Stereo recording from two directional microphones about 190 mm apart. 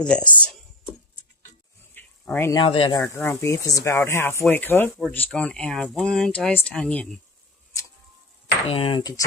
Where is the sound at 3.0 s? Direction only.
10° left (ahead or behind).